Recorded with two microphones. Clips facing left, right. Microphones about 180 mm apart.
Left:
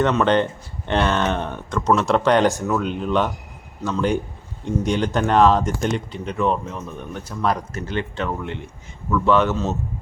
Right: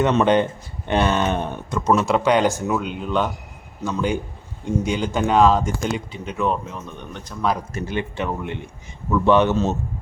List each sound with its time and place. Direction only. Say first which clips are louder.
0.0 s speech: right 1 dB; 15° right (ahead or behind); by 7.5 s 5° left (ahead or behind)
7.8 s a man's voice: even; 10° right (ahead or behind)